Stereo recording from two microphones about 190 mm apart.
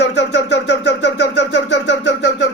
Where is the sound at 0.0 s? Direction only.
65° left (ahead or behind).